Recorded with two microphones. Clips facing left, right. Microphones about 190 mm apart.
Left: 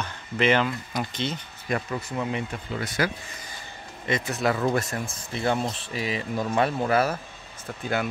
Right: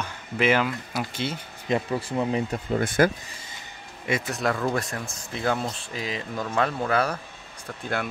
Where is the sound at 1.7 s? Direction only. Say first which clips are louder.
Right 3 dB; 30° right (ahead or behind); by 3.1 s 50° right (ahead or behind).